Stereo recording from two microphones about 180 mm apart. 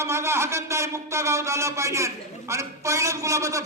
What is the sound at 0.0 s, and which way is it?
A man's voice, 15° right (ahead or behind).